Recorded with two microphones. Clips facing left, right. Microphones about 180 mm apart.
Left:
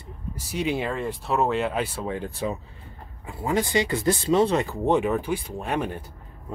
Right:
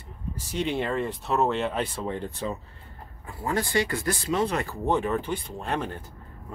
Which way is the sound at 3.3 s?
20° left (ahead or behind).